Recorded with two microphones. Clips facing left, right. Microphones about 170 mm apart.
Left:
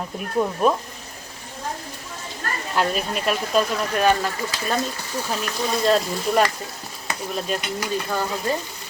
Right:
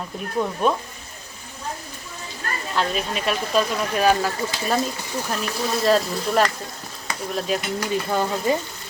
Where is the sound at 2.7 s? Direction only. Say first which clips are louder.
Left 1 dB; 5° left (ahead or behind).